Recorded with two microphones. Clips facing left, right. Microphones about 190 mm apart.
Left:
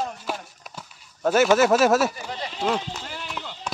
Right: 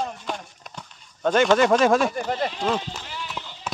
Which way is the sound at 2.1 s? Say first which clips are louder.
Right 8 dB; 50° right (ahead or behind).